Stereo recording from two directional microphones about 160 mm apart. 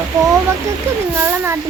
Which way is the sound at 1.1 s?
15° right (ahead or behind).